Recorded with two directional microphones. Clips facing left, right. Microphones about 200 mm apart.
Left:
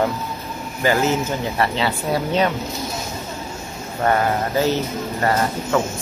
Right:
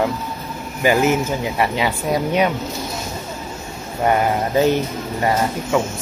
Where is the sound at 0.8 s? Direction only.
15° right (ahead or behind).